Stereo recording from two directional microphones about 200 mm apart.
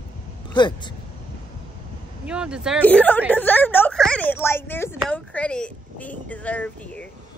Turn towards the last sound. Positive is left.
turn(degrees=5)  # may be behind; listen again after turning